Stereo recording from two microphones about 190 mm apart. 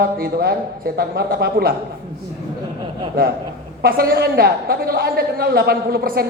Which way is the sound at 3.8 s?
55° right (ahead or behind).